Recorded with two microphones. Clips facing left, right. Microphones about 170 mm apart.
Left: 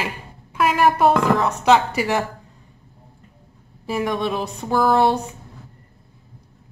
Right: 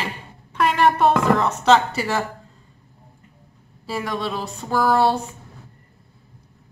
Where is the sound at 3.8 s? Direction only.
15° left (ahead or behind).